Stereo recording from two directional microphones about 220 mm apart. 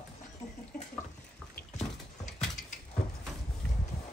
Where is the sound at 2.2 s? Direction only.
35° left (ahead or behind).